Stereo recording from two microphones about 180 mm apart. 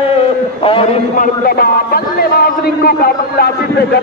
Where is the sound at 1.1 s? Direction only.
55° left (ahead or behind).